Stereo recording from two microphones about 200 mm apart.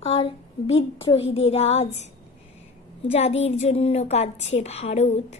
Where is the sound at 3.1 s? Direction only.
30° left (ahead or behind).